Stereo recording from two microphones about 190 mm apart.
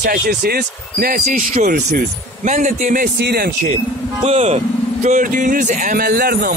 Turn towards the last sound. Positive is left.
turn(degrees=-55)  # may be behind; listen again after turning